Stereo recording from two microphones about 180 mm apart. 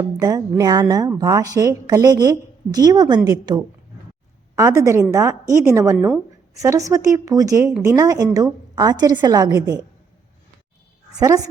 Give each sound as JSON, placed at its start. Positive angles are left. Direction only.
{"t": 0.2, "sound": "a woman's voice", "side_deg": -20}